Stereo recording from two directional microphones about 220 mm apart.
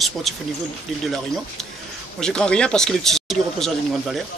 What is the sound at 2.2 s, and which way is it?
Speech, 5° left (ahead or behind).